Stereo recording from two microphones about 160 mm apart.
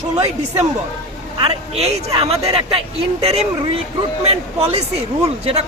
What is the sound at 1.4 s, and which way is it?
Speech, 40° right (ahead or behind).